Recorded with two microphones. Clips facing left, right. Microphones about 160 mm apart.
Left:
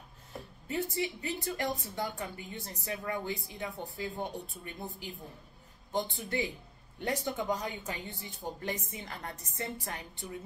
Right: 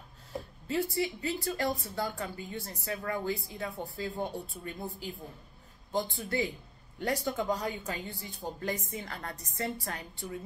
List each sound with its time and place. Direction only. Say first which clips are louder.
0.7 s a woman's voice: right 3 dB; 20° left (ahead or behind)